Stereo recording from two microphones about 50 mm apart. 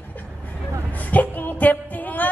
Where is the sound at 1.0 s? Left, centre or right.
Left.